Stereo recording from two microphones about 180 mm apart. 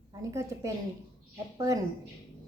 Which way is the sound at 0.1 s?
15° right (ahead or behind).